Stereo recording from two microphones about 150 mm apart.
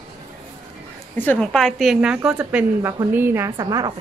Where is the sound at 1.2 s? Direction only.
5° left (ahead or behind).